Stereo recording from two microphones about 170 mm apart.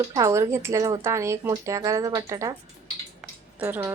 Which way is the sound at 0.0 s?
20° right (ahead or behind).